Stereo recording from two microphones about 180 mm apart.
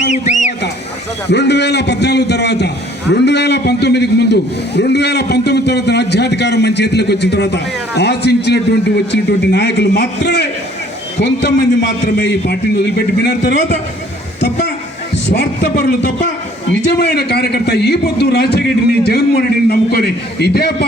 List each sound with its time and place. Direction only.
0.1 s a sound: 40° left (ahead or behind)
1.3 s a man's voice: 70° left (ahead or behind)
15.3 s a man's voice: 65° left (ahead or behind)